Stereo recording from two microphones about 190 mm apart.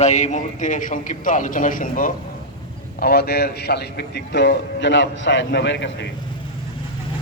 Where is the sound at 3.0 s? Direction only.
55° left (ahead or behind).